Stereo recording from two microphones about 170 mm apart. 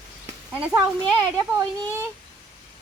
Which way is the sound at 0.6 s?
15° right (ahead or behind).